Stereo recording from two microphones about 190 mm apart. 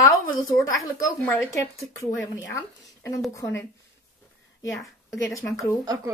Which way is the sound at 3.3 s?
15° left (ahead or behind).